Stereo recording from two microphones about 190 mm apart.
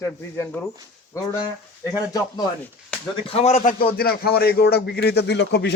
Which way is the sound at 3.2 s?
35° left (ahead or behind).